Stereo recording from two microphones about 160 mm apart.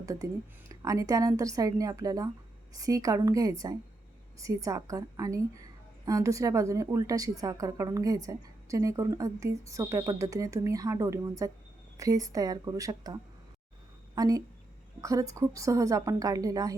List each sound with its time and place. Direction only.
0.0 s a woman's voice: 20° right (ahead or behind)
14.2 s a woman's voice: 20° right (ahead or behind)